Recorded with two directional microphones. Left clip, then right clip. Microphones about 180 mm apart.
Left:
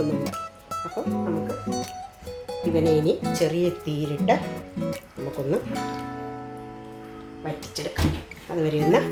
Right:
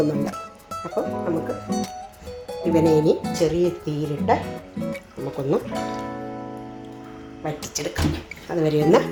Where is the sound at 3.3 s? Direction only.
20° right (ahead or behind).